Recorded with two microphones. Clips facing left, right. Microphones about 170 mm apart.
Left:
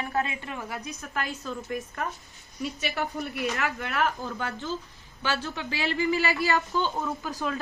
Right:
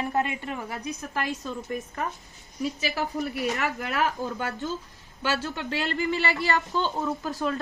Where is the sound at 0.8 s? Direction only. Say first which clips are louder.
Right 4 dB; 35° right (ahead or behind).